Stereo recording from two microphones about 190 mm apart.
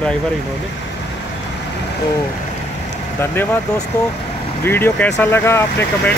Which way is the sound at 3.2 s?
10° left (ahead or behind).